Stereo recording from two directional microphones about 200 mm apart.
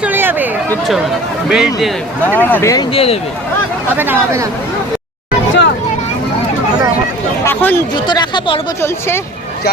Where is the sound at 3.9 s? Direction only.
10° right (ahead or behind).